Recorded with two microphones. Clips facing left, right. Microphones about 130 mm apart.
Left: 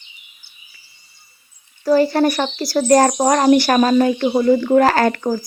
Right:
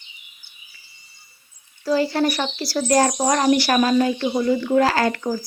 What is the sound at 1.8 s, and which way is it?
Speech, 50° left (ahead or behind).